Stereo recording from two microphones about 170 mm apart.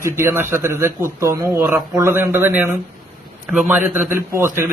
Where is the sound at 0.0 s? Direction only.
15° right (ahead or behind).